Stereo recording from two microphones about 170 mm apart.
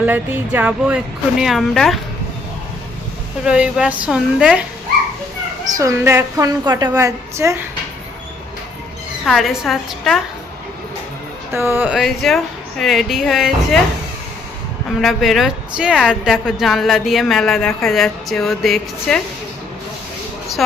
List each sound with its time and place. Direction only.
0.0 s speech: 10° right (ahead or behind)
3.4 s speech: 5° right (ahead or behind)
5.7 s a woman's voice: 15° right (ahead or behind)
9.2 s speech: centre (ahead or behind)
11.5 s speech: 15° right (ahead or behind)
14.8 s speech: centre (ahead or behind)
20.6 s a woman's voice: centre (ahead or behind)